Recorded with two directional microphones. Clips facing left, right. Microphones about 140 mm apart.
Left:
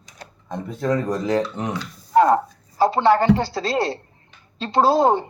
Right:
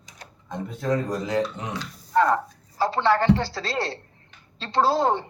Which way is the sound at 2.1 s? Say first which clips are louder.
Left 5 dB; 20° left (ahead or behind).